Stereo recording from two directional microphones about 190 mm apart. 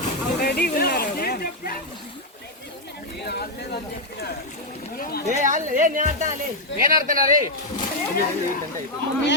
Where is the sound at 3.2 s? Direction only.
60° left (ahead or behind).